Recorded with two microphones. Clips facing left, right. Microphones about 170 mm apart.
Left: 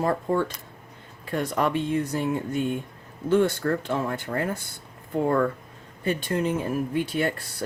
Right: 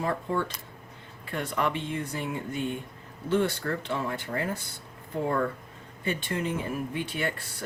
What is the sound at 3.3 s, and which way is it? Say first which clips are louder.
Speech: left 5 dB; 45° left (ahead or behind).